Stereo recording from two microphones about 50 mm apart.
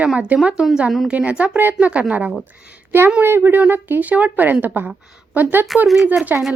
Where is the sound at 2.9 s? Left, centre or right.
Right.